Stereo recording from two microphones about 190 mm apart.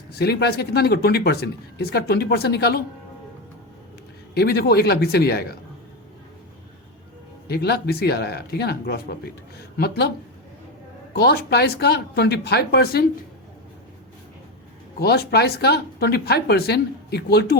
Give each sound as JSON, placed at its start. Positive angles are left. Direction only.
{"t": 0.1, "sound": "speech", "side_deg": 60}
{"t": 4.4, "sound": "speech", "side_deg": 55}
{"t": 7.4, "sound": "speech", "side_deg": 55}
{"t": 11.1, "sound": "speech", "side_deg": 55}
{"t": 14.9, "sound": "speech", "side_deg": 55}